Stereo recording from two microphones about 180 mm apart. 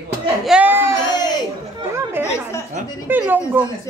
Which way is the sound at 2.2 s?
15° left (ahead or behind).